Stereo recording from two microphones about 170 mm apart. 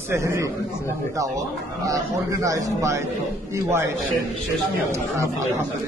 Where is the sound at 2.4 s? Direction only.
20° right (ahead or behind).